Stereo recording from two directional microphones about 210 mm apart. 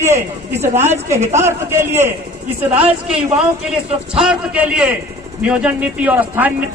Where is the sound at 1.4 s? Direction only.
10° right (ahead or behind).